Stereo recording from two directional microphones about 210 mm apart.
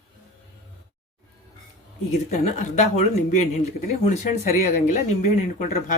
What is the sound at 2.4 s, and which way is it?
Speech, 35° left (ahead or behind).